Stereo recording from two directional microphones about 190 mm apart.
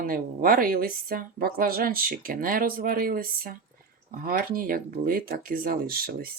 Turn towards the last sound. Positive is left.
turn(degrees=-50)  # may be behind; listen again after turning